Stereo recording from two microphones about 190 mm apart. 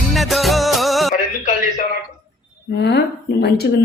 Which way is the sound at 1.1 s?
40° left (ahead or behind).